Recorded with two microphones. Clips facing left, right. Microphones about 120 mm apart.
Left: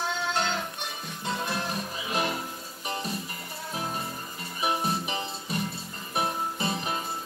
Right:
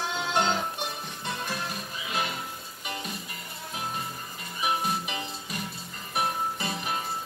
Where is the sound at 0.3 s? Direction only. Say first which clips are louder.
Right 5 dB; 15° right (ahead or behind).